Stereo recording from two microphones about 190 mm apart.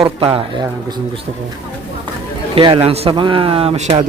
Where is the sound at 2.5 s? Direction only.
30° right (ahead or behind).